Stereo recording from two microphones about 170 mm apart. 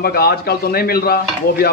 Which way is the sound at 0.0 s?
65° left (ahead or behind).